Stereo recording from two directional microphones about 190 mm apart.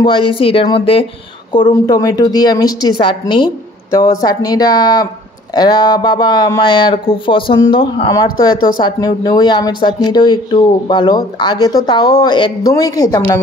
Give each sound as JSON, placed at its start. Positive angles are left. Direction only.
{"t": 0.0, "sound": "speech", "side_deg": 25}